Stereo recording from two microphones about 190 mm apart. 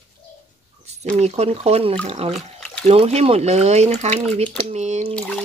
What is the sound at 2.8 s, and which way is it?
Speech, 35° right (ahead or behind).